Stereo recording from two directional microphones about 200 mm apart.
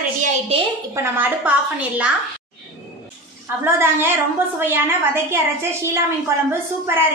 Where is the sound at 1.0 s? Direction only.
10° right (ahead or behind).